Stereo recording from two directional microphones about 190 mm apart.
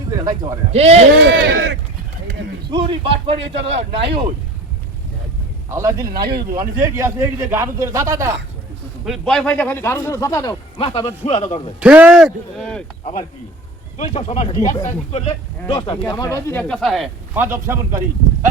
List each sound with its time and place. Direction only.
0.2 s a man's voice: 20° right (ahead or behind)
0.7 s a man's voice: 35° right (ahead or behind)
1.1 s speech: 65° right (ahead or behind)
2.6 s a man's voice: 25° right (ahead or behind)
5.7 s a man's voice: 15° right (ahead or behind)
9.0 s a man's voice: centre (ahead or behind); by 11.7 s 30° left (ahead or behind)
11.8 s speech: 5° right (ahead or behind)
14.0 s a man's voice: 35° left (ahead or behind)
16.3 s speech: 10° left (ahead or behind)
17.3 s a man's voice: 10° right (ahead or behind)